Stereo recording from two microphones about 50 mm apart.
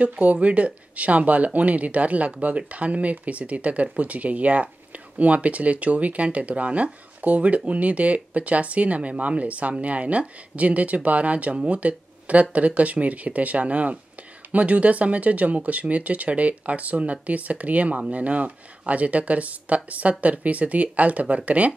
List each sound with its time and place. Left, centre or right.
0.0 s speech: right